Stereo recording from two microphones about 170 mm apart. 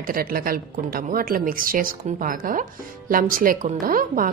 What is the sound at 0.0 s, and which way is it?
A woman's voice, 60° right (ahead or behind).